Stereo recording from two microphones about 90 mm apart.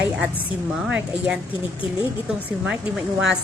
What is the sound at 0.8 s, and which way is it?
Speech, 15° right (ahead or behind).